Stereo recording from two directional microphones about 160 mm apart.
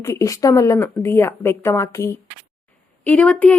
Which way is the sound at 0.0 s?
20° left (ahead or behind).